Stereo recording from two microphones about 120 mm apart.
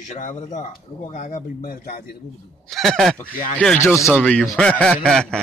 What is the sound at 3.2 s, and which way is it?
Speech, 15° left (ahead or behind).